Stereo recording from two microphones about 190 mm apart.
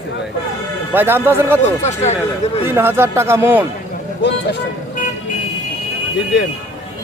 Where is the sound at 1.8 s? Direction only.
35° left (ahead or behind).